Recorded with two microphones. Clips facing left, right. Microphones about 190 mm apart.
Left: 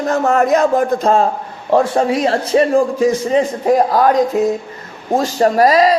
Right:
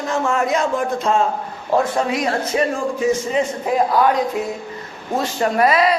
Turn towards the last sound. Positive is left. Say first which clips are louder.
# left 5 dB
turn(degrees=40)  # may be behind; listen again after turning